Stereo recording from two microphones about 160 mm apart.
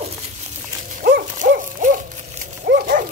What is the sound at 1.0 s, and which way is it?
Hoot, 70° right (ahead or behind).